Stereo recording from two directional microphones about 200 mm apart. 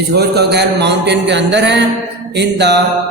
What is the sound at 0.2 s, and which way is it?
Speech, 55° right (ahead or behind).